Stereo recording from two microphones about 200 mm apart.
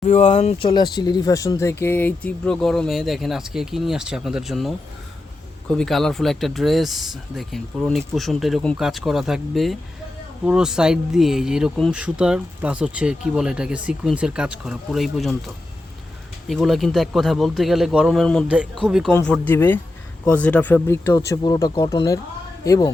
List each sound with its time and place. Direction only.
0.0 s speech: 35° left (ahead or behind); by 15.4 s centre (ahead or behind)
16.5 s speech: centre (ahead or behind); by 22.9 s 15° left (ahead or behind)